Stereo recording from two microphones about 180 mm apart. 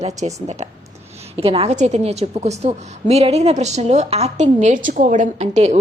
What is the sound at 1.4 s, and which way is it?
A woman's voice, 35° right (ahead or behind).